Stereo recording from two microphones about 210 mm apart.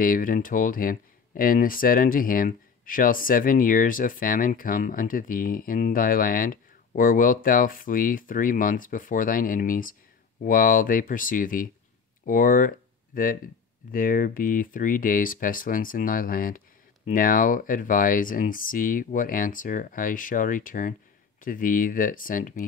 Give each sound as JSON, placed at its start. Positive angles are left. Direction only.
{"t": 0.0, "sound": "speech", "side_deg": 40}